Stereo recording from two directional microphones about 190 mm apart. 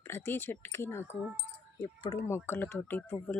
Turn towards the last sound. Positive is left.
turn(degrees=10)  # may be behind; listen again after turning